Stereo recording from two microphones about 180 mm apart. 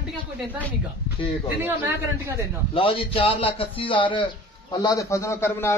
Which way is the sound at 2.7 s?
30° left (ahead or behind).